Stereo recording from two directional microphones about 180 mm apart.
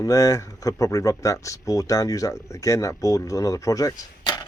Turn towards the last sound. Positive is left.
turn(degrees=20)  # may be behind; listen again after turning